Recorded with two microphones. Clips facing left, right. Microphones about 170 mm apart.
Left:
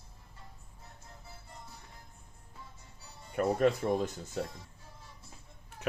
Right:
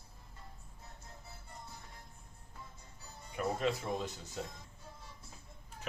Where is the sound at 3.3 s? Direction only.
50° left (ahead or behind).